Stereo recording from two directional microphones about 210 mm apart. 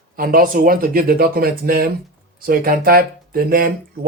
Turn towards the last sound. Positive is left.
turn(degrees=-45)  # may be behind; listen again after turning